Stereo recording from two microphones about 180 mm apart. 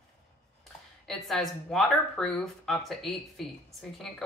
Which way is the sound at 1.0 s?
Centre (ahead or behind).